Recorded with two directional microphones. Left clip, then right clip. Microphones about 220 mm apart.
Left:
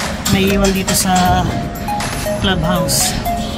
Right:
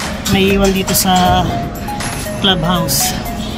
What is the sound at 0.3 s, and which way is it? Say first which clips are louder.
Speech: right 3 dB; 25° right (ahead or behind).